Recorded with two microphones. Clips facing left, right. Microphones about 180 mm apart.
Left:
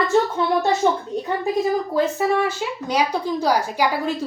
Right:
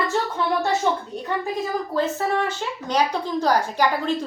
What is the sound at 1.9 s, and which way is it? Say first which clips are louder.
A woman's voice: left 3 dB; 10° left (ahead or behind).